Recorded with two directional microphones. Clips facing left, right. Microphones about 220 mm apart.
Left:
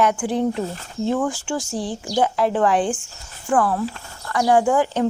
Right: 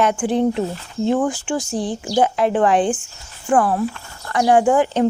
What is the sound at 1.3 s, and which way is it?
A woman's voice, 15° right (ahead or behind).